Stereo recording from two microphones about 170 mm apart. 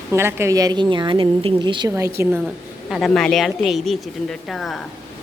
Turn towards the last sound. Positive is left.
turn(degrees=0)  # may be behind; listen again after turning